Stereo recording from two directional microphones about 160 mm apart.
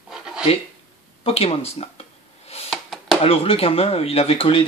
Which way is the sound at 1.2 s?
40° left (ahead or behind).